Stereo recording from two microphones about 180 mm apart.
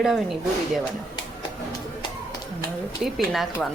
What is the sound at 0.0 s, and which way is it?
Speech, centre (ahead or behind).